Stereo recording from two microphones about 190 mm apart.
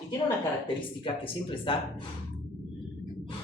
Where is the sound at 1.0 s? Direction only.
25° left (ahead or behind).